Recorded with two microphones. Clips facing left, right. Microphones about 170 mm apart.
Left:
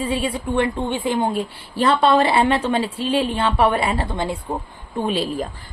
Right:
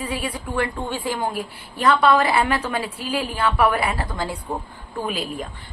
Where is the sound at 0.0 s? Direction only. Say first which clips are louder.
Left 5 dB; 25° left (ahead or behind).